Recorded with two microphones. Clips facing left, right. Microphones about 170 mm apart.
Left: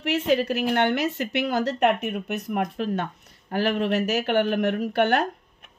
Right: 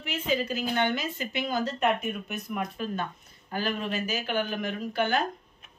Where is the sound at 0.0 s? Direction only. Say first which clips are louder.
Left 7 dB; 75° left (ahead or behind).